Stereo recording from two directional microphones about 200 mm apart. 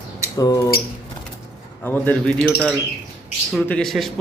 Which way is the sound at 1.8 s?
10° left (ahead or behind).